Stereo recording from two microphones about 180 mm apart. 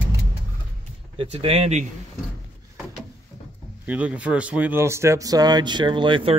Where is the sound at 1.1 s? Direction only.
35° right (ahead or behind).